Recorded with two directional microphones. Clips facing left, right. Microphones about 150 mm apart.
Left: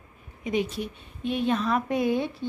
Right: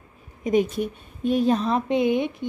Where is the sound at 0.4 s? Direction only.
45° right (ahead or behind).